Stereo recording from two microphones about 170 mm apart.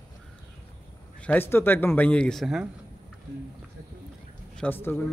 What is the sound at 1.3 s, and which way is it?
Speech, 15° left (ahead or behind).